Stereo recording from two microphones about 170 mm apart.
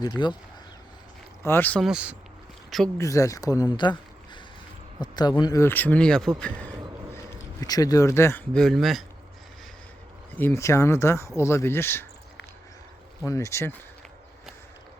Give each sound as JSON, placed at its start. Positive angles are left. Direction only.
{"t": 0.2, "sound": "speech", "side_deg": 25}
{"t": 1.4, "sound": "speech", "side_deg": 15}
{"t": 1.8, "sound": "speech", "side_deg": -5}
{"t": 3.0, "sound": "speech", "side_deg": 20}
{"t": 4.9, "sound": "speech", "side_deg": 25}
{"t": 7.6, "sound": "speech", "side_deg": 20}
{"t": 10.3, "sound": "speech", "side_deg": 15}
{"t": 13.2, "sound": "speech", "side_deg": 15}